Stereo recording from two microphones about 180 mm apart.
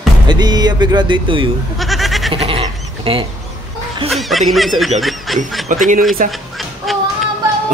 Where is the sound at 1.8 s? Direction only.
Centre (ahead or behind).